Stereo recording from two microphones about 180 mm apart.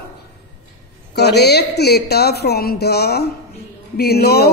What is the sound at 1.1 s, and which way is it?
A woman's voice, 65° left (ahead or behind).